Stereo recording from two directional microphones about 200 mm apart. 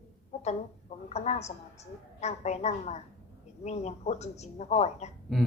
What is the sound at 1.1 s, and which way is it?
A woman's voice, 35° left (ahead or behind).